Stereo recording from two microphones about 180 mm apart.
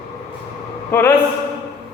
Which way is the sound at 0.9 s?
15° left (ahead or behind).